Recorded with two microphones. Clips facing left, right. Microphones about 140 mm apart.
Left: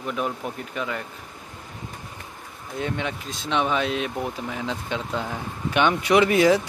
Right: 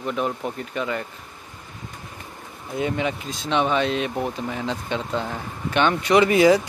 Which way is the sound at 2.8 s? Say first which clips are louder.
Right 4 dB; centre (ahead or behind).